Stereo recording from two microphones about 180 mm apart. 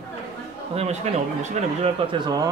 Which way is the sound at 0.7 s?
35° right (ahead or behind).